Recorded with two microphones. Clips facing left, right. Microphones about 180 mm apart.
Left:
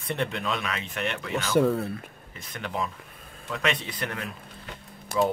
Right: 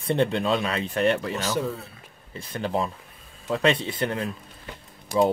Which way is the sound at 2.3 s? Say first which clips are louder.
Right 6 dB; 30° right (ahead or behind).